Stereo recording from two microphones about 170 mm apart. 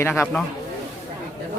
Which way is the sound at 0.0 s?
15° left (ahead or behind).